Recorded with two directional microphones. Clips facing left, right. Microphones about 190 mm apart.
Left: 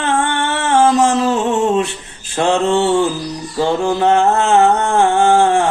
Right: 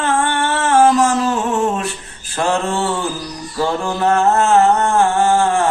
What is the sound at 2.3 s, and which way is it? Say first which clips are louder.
Mantra: left 4 dB; 20° left (ahead or behind).